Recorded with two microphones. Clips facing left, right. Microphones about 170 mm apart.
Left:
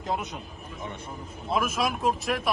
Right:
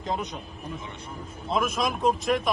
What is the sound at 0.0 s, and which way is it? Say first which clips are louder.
Speech: right 1 dB; 5° left (ahead or behind).